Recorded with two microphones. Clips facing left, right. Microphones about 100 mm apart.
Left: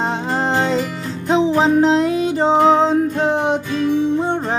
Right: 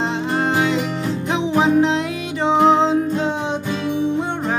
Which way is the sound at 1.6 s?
35° left (ahead or behind).